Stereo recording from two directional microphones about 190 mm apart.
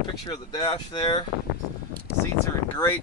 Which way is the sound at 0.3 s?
20° left (ahead or behind).